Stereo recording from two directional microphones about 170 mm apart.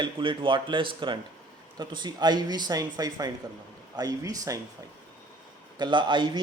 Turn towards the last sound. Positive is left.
turn(degrees=-25)  # may be behind; listen again after turning